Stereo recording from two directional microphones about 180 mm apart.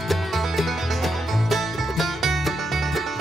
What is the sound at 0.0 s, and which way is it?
Music, centre (ahead or behind).